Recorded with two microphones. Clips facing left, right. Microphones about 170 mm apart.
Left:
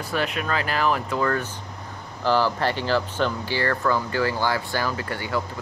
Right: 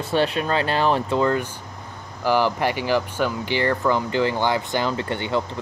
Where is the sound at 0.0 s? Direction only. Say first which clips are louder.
Right 5 dB; 30° right (ahead or behind).